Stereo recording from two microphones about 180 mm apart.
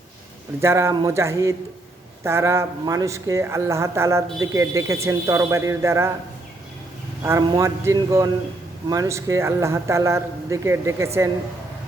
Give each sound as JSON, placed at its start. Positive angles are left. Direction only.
{"t": 0.6, "sound": "speech", "side_deg": -15}
{"t": 7.2, "sound": "speech", "side_deg": -15}